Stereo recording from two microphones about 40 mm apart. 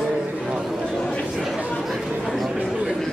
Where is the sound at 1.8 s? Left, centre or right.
Centre.